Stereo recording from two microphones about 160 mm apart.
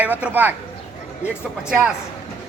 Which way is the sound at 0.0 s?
10° right (ahead or behind).